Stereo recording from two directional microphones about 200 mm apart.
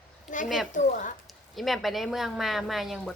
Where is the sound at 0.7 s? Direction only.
40° left (ahead or behind).